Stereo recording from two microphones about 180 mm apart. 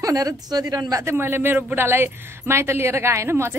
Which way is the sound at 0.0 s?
20° right (ahead or behind).